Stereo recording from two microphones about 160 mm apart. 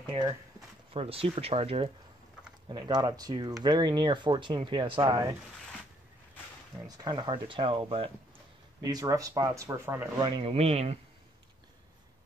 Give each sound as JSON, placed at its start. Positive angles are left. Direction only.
{"t": 0.0, "sound": "speech", "side_deg": -30}
{"t": 2.7, "sound": "speech", "side_deg": -25}
{"t": 7.0, "sound": "speech", "side_deg": -25}
{"t": 8.8, "sound": "speech", "side_deg": -25}
{"t": 10.2, "sound": "speech", "side_deg": -30}